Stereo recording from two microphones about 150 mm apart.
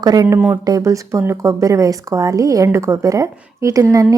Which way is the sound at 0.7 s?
20° right (ahead or behind).